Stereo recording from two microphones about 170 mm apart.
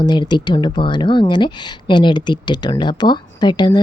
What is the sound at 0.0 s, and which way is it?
Speech, 25° left (ahead or behind).